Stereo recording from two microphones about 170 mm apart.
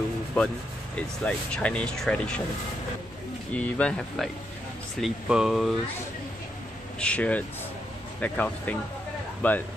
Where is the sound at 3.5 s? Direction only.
5° left (ahead or behind).